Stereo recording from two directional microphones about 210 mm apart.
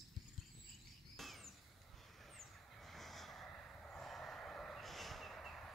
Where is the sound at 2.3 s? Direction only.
Centre (ahead or behind).